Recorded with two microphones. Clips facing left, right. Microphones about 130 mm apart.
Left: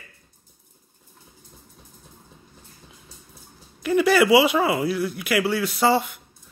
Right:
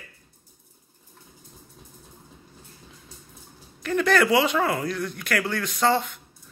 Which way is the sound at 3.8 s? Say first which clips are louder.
Left 3 dB; 10° left (ahead or behind).